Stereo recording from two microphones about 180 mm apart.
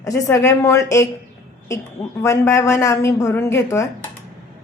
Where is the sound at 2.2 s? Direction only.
15° left (ahead or behind).